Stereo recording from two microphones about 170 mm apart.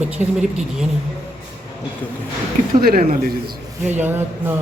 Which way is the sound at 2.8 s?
60° right (ahead or behind).